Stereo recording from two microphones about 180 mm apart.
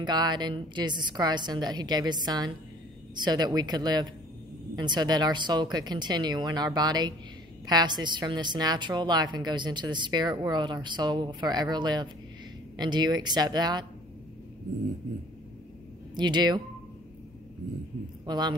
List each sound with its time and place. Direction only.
0.0 s a woman's voice: 25° right (ahead or behind)
16.2 s a woman's voice: 25° right (ahead or behind)
18.2 s a man's voice: 25° right (ahead or behind)